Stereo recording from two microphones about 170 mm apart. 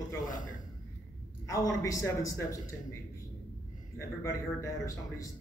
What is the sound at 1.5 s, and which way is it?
A man's voice, 20° left (ahead or behind).